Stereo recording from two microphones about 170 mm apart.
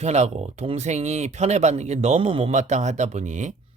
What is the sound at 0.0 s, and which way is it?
Speech, 40° right (ahead or behind).